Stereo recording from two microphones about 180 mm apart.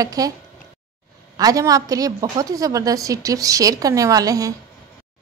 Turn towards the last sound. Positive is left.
turn(degrees=-20)  # may be behind; listen again after turning